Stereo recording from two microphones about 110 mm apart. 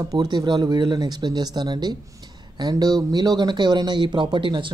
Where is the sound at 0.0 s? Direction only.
35° right (ahead or behind).